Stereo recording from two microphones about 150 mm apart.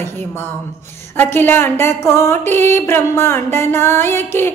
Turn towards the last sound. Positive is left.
turn(degrees=15)  # may be behind; listen again after turning